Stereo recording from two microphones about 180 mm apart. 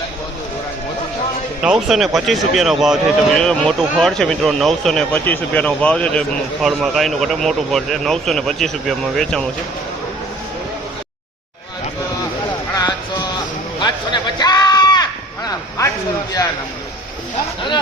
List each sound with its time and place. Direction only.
1.6 s speech: centre (ahead or behind)
12.7 s music: 20° left (ahead or behind)
13.7 s a sound: 25° left (ahead or behind)